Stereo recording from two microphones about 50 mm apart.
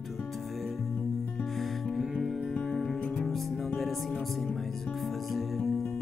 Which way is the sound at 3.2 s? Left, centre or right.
Centre.